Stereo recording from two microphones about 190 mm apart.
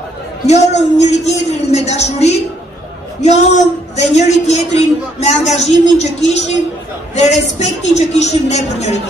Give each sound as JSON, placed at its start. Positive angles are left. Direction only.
{"t": 0.7, "sound": "a man's voice", "side_deg": 35}